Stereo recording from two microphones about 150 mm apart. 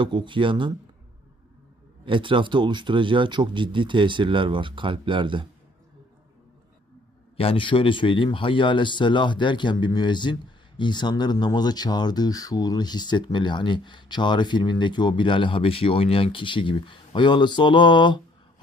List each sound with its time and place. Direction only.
0.0 s speech: 30° right (ahead or behind)
2.0 s speech: 35° right (ahead or behind)
7.3 s speech: 40° left (ahead or behind)